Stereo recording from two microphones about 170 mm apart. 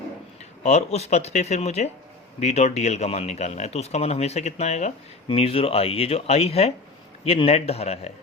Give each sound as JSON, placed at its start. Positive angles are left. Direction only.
{"t": 0.6, "sound": "speech", "side_deg": 40}